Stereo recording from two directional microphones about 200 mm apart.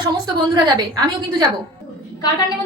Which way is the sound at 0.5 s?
20° right (ahead or behind).